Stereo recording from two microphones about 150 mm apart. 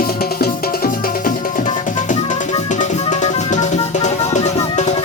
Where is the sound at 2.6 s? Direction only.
55° left (ahead or behind).